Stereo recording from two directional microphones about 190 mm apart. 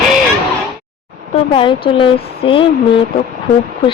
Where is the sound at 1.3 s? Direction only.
25° left (ahead or behind).